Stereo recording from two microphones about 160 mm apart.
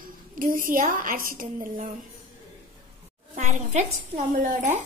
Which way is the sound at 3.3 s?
50° right (ahead or behind).